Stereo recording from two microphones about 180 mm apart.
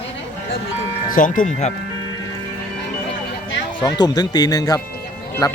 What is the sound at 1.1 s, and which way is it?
Speech, 50° left (ahead or behind).